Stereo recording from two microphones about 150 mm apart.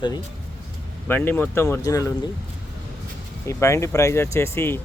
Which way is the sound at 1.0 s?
15° left (ahead or behind).